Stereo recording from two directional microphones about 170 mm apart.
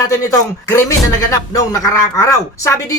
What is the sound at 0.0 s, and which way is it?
A woman's voice, 20° left (ahead or behind).